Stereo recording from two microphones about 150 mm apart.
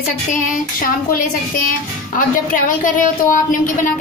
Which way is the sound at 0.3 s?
65° left (ahead or behind).